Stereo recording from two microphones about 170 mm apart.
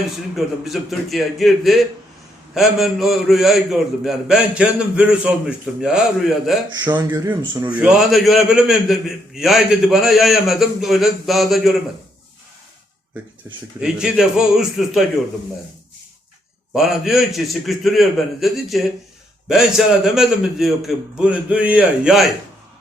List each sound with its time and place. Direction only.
0.3 s a man's voice: centre (ahead or behind)
6.8 s speech: 25° right (ahead or behind)
7.7 s a man's voice: 5° right (ahead or behind)
13.7 s a man's voice: 5° right (ahead or behind)
16.7 s a man's voice: centre (ahead or behind)